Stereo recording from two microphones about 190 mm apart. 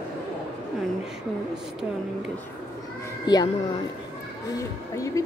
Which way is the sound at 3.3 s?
20° left (ahead or behind).